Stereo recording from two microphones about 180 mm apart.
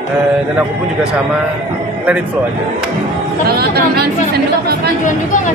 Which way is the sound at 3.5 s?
60° right (ahead or behind).